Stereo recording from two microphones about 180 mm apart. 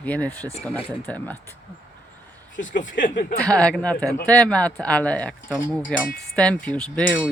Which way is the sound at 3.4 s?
5° left (ahead or behind).